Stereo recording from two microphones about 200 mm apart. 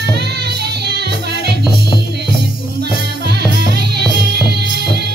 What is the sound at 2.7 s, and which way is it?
Music, 55° right (ahead or behind).